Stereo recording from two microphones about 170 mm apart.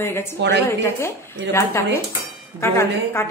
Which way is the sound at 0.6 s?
15° left (ahead or behind).